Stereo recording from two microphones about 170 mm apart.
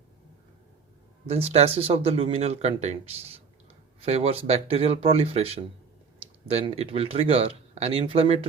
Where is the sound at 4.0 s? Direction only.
35° right (ahead or behind).